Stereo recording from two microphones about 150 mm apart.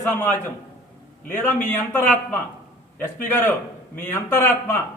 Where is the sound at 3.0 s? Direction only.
10° left (ahead or behind).